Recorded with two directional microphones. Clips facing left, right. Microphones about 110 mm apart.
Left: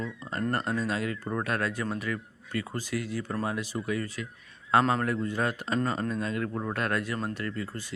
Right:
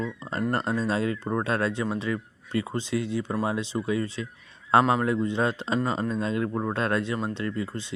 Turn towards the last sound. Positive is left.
turn(degrees=-25)  # may be behind; listen again after turning